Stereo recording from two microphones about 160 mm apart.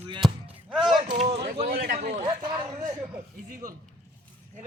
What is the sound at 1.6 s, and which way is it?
Speech, 70° right (ahead or behind).